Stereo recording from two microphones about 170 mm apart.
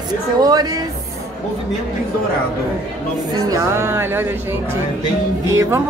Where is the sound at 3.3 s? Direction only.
20° right (ahead or behind).